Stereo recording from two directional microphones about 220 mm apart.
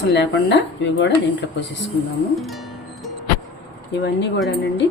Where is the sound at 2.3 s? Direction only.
Centre (ahead or behind).